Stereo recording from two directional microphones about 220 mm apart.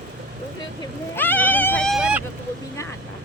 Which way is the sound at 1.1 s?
10° left (ahead or behind).